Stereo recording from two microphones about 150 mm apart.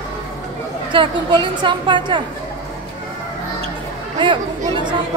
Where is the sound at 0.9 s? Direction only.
30° right (ahead or behind).